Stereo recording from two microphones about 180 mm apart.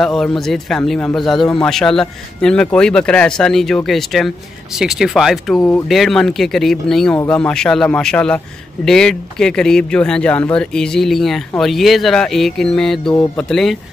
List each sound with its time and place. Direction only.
0.0 s a man's voice: centre (ahead or behind)